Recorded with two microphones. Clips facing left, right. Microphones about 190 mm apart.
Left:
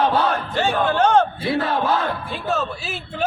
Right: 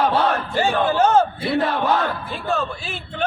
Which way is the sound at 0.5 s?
10° right (ahead or behind).